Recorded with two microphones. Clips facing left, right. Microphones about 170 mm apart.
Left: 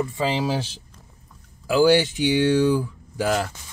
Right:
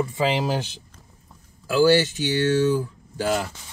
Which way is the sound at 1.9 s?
15° left (ahead or behind).